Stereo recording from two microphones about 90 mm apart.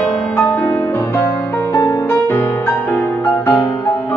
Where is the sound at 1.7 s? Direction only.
35° left (ahead or behind).